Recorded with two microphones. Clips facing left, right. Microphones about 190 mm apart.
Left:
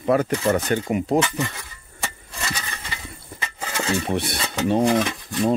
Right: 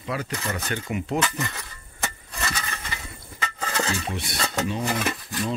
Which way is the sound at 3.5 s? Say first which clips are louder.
Right 1 dB; 10° left (ahead or behind).